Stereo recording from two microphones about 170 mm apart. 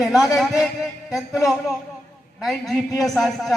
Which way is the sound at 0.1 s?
20° left (ahead or behind).